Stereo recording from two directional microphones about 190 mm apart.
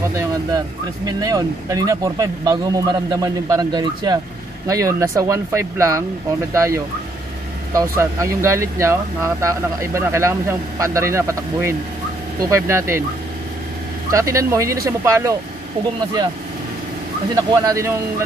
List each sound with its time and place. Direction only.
1.0 s speech: 20° right (ahead or behind)
14.1 s speech: 15° right (ahead or behind)
17.5 s speech: 15° right (ahead or behind)